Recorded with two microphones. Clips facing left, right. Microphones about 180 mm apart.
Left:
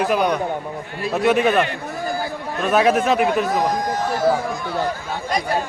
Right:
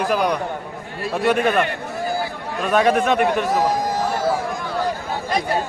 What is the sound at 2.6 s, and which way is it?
A man's voice, 5° left (ahead or behind).